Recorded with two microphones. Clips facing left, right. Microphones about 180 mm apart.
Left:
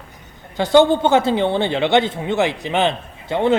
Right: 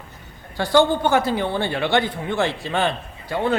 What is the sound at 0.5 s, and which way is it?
Speech, 20° left (ahead or behind).